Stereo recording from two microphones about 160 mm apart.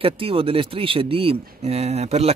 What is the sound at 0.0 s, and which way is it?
Speech, 35° right (ahead or behind).